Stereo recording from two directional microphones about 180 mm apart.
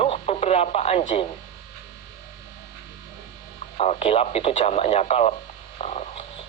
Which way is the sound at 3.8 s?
35° left (ahead or behind).